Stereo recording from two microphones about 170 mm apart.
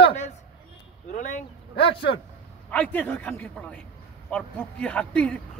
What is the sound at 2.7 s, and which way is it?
A man's voice, 10° left (ahead or behind).